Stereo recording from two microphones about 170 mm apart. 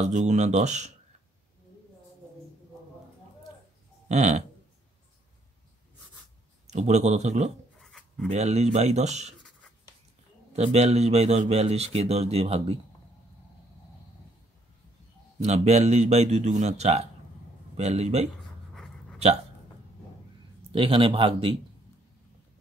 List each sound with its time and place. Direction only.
0.0 s speech: 45° right (ahead or behind)
4.1 s speech: 40° right (ahead or behind)
6.7 s speech: 40° right (ahead or behind)
10.5 s speech: 40° right (ahead or behind)
15.4 s speech: 40° right (ahead or behind)
18.7 s pant: centre (ahead or behind)
20.7 s speech: 30° right (ahead or behind)